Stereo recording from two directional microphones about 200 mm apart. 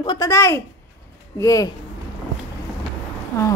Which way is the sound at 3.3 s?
10° left (ahead or behind).